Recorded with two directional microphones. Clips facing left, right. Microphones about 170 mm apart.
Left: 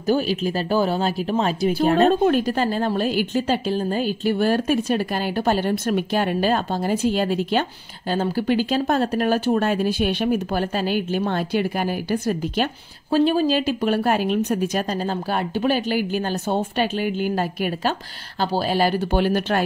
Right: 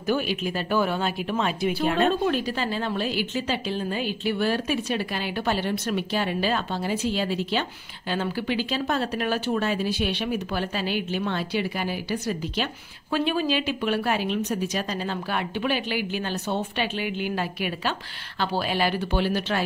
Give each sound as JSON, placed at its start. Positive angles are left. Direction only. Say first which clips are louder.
{"t": 0.0, "sound": "speech", "louder": "left 5 dB", "side_deg": 35}
{"t": 13.1, "sound": "speech", "louder": "left 6 dB", "side_deg": 40}